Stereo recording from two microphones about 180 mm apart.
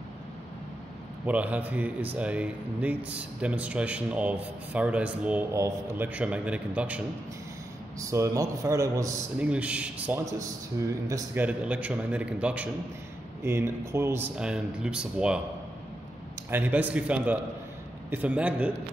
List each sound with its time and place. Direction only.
1.2 s a man's voice: 10° right (ahead or behind)
8.0 s a man's voice: 15° right (ahead or behind)
9.4 s a man's voice: 5° right (ahead or behind)
10.8 s a man's voice: 20° right (ahead or behind)
11.4 s a man's voice: 5° right (ahead or behind)
16.4 s a man's voice: 10° right (ahead or behind)